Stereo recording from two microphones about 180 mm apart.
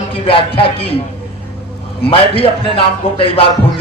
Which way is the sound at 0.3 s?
30° left (ahead or behind).